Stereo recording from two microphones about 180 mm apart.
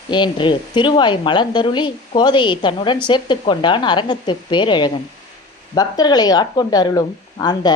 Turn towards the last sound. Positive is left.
turn(degrees=25)  # may be behind; listen again after turning